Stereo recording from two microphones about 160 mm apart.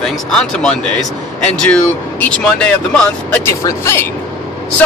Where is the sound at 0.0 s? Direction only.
5° left (ahead or behind).